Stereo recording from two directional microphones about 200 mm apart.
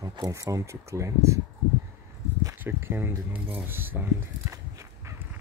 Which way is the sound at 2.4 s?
15° right (ahead or behind).